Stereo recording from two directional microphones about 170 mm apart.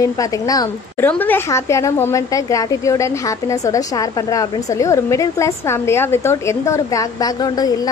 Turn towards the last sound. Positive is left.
turn(degrees=20)  # may be behind; listen again after turning